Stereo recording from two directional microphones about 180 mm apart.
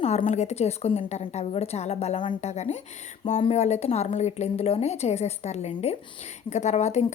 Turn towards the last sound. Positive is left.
turn(degrees=40)  # may be behind; listen again after turning